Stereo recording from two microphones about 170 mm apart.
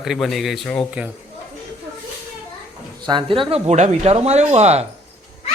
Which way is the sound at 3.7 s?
40° right (ahead or behind).